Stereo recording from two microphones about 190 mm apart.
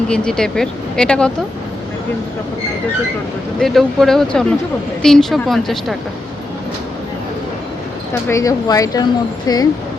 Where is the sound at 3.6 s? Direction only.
Centre (ahead or behind).